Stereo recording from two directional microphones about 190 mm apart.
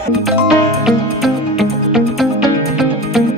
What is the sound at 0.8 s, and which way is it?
Music, centre (ahead or behind).